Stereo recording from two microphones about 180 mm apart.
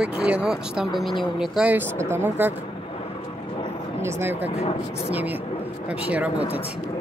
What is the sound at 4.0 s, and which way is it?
Speech, 15° right (ahead or behind).